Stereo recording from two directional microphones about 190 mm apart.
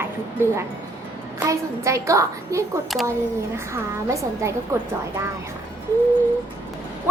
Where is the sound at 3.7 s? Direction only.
15° right (ahead or behind).